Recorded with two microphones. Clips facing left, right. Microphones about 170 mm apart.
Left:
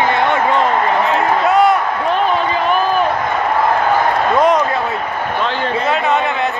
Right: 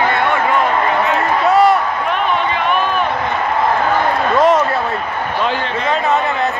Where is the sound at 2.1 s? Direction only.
35° left (ahead or behind).